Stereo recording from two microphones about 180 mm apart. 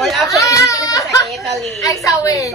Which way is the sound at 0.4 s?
20° left (ahead or behind).